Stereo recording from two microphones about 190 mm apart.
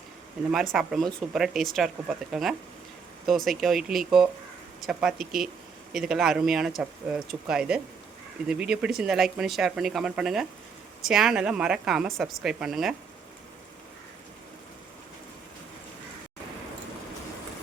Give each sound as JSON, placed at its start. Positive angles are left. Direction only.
{"t": 0.5, "sound": "speech", "side_deg": 0}